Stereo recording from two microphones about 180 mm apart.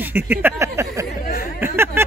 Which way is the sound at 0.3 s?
10° right (ahead or behind).